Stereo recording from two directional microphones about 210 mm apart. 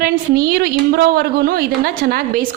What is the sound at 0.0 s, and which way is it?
A woman's voice, 45° right (ahead or behind).